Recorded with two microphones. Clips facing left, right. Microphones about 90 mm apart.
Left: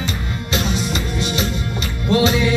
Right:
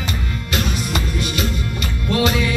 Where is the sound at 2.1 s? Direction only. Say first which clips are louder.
Left 3 dB; 25° left (ahead or behind).